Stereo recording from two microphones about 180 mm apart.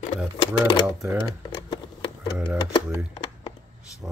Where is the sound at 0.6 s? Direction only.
20° left (ahead or behind).